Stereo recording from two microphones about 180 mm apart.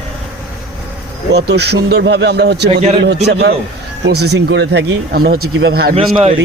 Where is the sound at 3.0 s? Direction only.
70° right (ahead or behind).